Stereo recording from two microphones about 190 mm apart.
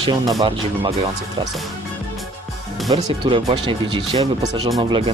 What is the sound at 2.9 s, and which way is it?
Speech, 25° right (ahead or behind).